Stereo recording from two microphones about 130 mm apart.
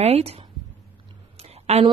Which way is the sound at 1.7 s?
55° right (ahead or behind).